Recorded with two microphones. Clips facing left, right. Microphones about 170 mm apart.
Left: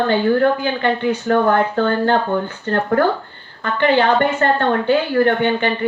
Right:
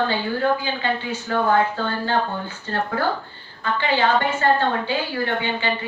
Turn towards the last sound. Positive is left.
turn(degrees=60)  # may be behind; listen again after turning